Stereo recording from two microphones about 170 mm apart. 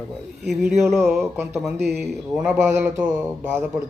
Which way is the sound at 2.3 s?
5° right (ahead or behind).